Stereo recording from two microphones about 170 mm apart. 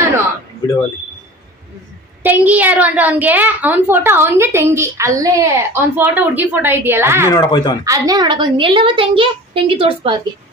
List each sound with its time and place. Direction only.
2.2 s a woman's voice: 10° right (ahead or behind)
7.2 s speech: 25° left (ahead or behind)
7.8 s a woman's voice: 20° right (ahead or behind)